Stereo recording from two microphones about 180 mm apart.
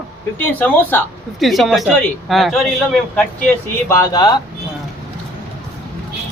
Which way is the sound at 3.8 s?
15° left (ahead or behind).